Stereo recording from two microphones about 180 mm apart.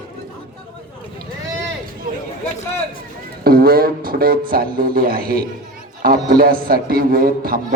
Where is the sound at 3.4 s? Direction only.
55° right (ahead or behind).